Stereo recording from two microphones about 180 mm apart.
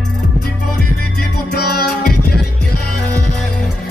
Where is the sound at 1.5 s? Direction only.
60° left (ahead or behind).